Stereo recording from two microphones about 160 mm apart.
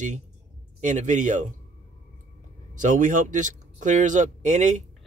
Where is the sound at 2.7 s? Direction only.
55° right (ahead or behind).